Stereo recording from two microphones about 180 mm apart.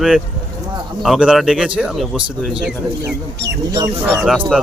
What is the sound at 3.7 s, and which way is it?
Speech, 15° right (ahead or behind).